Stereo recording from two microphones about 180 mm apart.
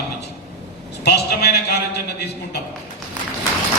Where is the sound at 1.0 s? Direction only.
65° left (ahead or behind).